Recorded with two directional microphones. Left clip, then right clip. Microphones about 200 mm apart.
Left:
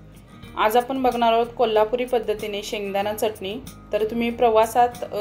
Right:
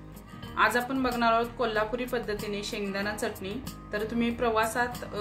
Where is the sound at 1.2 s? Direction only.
25° right (ahead or behind).